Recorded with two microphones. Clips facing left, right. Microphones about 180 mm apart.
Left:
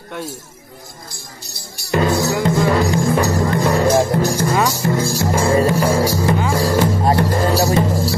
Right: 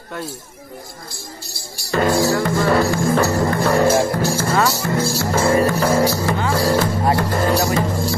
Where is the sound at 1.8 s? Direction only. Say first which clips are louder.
Even; 20° left (ahead or behind).